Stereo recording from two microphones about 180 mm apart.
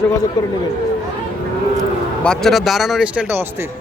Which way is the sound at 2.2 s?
Centre (ahead or behind).